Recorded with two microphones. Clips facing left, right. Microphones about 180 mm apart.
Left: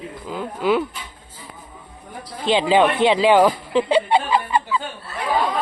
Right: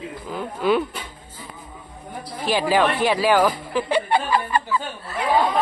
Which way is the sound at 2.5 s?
20° left (ahead or behind).